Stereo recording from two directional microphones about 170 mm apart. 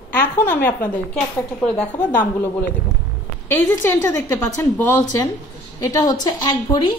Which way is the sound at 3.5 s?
15° left (ahead or behind).